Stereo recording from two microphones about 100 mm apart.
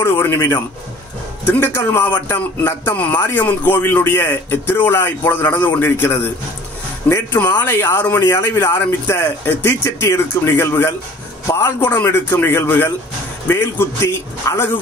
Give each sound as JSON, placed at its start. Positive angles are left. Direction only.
{"t": 0.0, "sound": "speech", "side_deg": 25}